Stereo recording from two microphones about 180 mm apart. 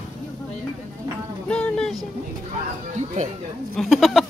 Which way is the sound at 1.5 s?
5° left (ahead or behind).